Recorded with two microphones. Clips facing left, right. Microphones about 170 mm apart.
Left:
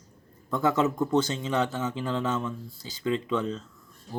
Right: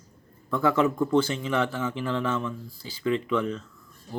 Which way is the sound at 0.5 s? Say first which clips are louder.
Right 2 dB; 25° left (ahead or behind).